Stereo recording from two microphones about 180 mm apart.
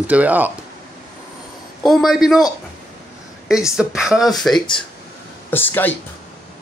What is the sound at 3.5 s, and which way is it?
Speech, 5° right (ahead or behind).